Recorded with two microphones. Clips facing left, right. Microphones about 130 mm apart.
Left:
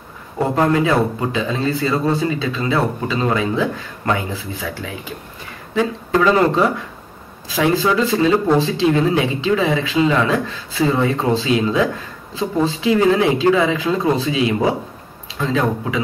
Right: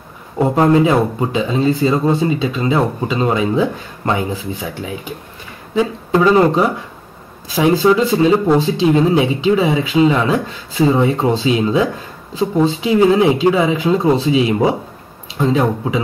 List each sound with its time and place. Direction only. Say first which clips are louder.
0.4 s a man's voice: right 4 dB; 15° right (ahead or behind)